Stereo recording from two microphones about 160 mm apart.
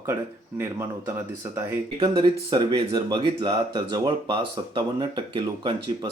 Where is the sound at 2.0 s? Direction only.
25° right (ahead or behind).